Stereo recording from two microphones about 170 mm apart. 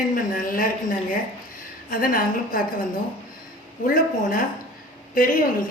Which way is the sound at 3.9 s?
55° left (ahead or behind).